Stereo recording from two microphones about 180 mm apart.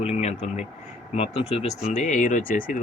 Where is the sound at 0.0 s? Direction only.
35° left (ahead or behind).